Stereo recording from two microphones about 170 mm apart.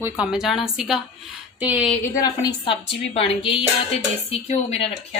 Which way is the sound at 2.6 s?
30° left (ahead or behind).